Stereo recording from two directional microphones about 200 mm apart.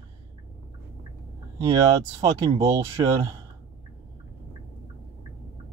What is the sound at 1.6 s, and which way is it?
Speech, 15° right (ahead or behind).